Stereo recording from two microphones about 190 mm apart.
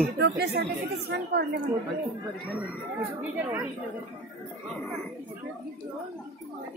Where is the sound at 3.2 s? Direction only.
10° right (ahead or behind).